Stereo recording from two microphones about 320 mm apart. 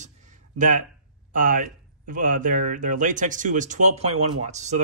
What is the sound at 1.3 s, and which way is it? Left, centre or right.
Speech, right.